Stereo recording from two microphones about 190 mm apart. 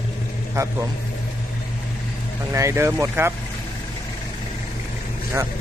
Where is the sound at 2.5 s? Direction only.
15° right (ahead or behind).